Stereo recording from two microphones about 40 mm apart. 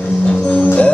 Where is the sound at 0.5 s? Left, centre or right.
Left.